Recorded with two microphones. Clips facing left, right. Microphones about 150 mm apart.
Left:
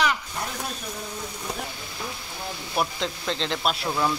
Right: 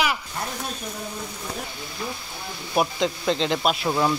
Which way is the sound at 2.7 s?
5° right (ahead or behind).